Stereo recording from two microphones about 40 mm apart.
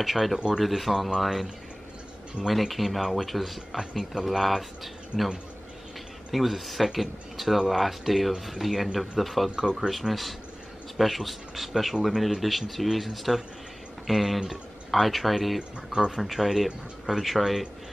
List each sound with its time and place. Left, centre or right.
0.0 s speech: centre
6.3 s speech: centre
15.9 s speech: centre
16.2 s speech: centre